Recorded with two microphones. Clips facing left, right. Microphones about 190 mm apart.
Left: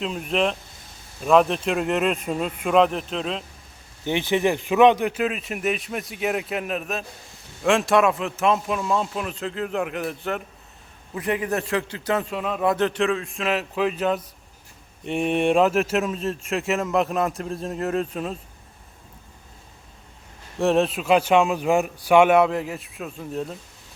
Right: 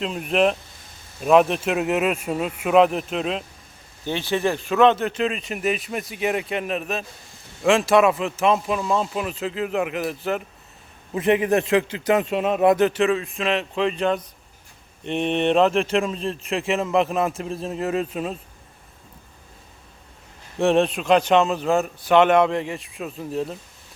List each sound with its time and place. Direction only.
0.0 s speech: centre (ahead or behind)
4.0 s speech: 15° left (ahead or behind); by 10.4 s 5° right (ahead or behind)
11.1 s a man's voice: 20° right (ahead or behind); by 18.3 s centre (ahead or behind)
20.6 s speech: centre (ahead or behind)